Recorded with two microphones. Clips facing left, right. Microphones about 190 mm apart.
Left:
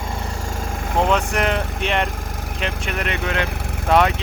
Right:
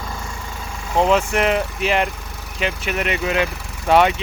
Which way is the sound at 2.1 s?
50° left (ahead or behind).